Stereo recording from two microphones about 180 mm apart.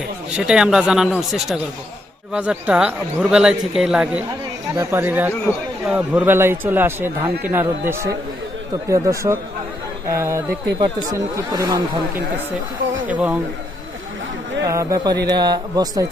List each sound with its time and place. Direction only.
0.3 s speech: 5° right (ahead or behind)
4.7 s a man's voice: 15° right (ahead or behind)
13.1 s a man's voice: 10° right (ahead or behind)
14.7 s speech: 20° right (ahead or behind)